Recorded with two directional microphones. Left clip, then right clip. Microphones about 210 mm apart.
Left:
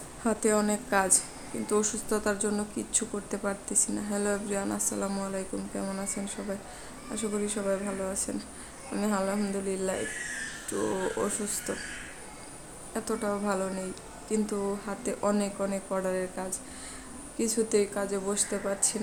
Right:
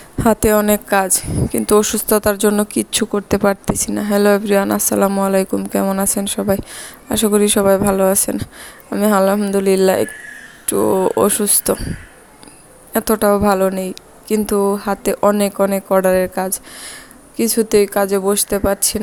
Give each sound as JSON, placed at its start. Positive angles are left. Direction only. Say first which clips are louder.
{"t": 0.2, "sound": "speech", "louder": "right 14 dB", "side_deg": -45}
{"t": 12.9, "sound": "speech", "louder": "right 17 dB", "side_deg": -45}